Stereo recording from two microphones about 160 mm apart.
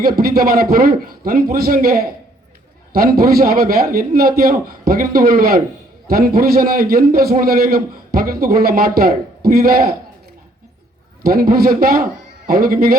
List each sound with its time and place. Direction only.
0.0 s a man's voice: 70° right (ahead or behind)
11.2 s a man's voice: 70° right (ahead or behind)